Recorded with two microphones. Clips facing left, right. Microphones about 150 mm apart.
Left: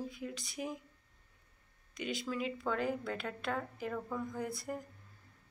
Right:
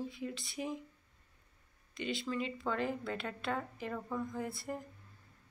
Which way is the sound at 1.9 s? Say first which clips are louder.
Right 1 dB; centre (ahead or behind).